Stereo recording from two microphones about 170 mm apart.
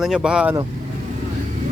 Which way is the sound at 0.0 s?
5° right (ahead or behind).